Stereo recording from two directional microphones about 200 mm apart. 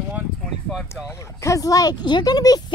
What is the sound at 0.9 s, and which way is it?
Speech, 10° left (ahead or behind).